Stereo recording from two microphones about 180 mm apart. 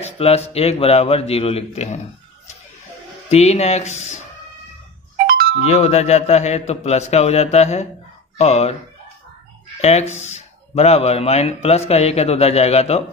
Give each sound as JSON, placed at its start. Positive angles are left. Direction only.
{"t": 0.0, "sound": "a man's voice", "side_deg": 35}
{"t": 3.3, "sound": "a man's voice", "side_deg": 40}
{"t": 5.6, "sound": "a man's voice", "side_deg": 35}
{"t": 9.8, "sound": "a man's voice", "side_deg": 35}